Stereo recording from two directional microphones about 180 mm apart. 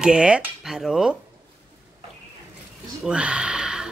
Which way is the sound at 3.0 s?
5° right (ahead or behind).